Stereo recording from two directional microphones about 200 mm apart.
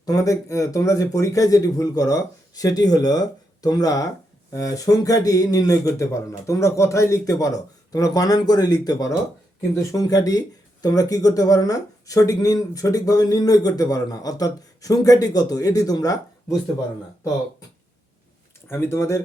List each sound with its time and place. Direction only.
0.0 s speech: 15° left (ahead or behind)
18.7 s speech: 15° left (ahead or behind)